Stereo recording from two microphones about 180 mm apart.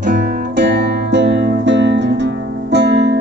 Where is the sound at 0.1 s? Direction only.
65° right (ahead or behind).